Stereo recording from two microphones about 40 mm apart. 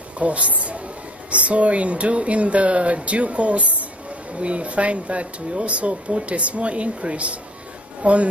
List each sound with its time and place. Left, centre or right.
0.2 s speech: right